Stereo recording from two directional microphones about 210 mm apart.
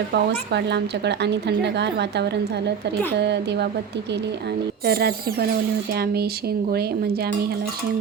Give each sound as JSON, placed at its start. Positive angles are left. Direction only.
{"t": 0.1, "sound": "speech", "side_deg": -55}
{"t": 4.9, "sound": "speech", "side_deg": -45}